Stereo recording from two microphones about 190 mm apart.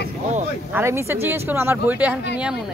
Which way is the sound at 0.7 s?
15° right (ahead or behind).